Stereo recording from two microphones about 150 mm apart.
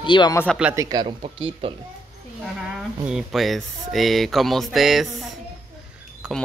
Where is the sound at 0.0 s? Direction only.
30° left (ahead or behind).